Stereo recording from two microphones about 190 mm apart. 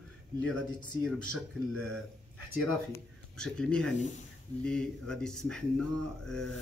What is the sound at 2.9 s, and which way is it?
Speech, 5° left (ahead or behind).